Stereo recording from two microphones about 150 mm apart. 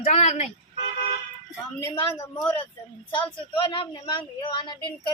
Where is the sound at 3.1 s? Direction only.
35° left (ahead or behind).